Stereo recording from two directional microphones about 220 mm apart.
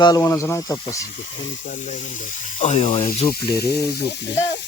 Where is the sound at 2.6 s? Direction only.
30° left (ahead or behind).